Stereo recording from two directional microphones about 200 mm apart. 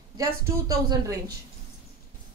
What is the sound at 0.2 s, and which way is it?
A woman's voice, 15° right (ahead or behind).